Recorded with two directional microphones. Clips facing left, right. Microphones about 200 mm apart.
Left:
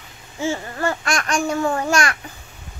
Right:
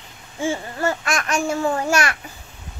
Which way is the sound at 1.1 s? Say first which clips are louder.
Left 1 dB; 5° right (ahead or behind).